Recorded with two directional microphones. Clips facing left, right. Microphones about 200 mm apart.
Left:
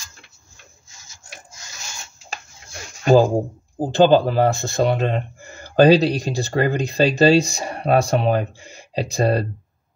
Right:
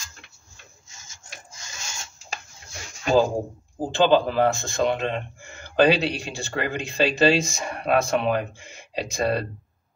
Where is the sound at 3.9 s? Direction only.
40° left (ahead or behind).